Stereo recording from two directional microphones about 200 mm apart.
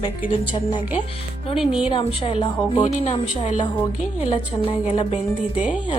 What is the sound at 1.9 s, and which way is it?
Speech, 25° left (ahead or behind).